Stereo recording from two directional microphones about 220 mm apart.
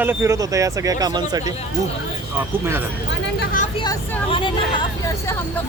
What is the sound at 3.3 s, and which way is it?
Vehicle, 35° left (ahead or behind).